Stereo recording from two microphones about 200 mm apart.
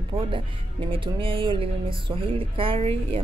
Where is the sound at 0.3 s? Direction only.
25° right (ahead or behind).